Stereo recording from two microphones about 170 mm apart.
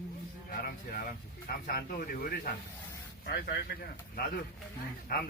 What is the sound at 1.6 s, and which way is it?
Speech, 60° left (ahead or behind).